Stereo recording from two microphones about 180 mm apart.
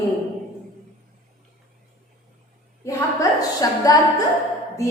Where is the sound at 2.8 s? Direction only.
20° left (ahead or behind).